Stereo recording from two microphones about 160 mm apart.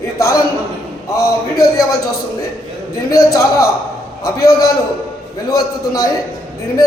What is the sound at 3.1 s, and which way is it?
Speech, 20° left (ahead or behind).